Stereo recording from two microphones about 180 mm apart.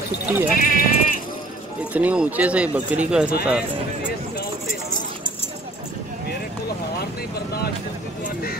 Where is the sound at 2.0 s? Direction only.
10° right (ahead or behind).